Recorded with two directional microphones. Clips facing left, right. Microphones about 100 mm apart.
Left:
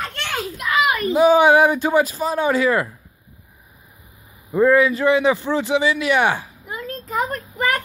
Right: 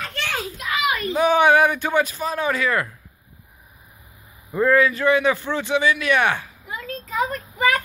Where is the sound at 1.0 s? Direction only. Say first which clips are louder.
Left 3 dB; 20° left (ahead or behind).